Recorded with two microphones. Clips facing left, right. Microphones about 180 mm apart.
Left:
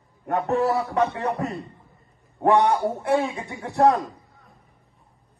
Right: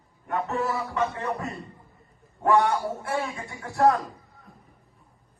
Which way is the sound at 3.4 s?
15° left (ahead or behind).